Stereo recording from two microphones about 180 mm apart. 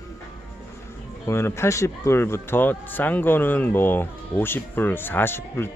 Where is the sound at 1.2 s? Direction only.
15° left (ahead or behind).